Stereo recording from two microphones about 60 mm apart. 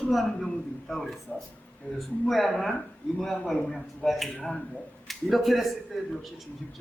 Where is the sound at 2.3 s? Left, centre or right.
Centre.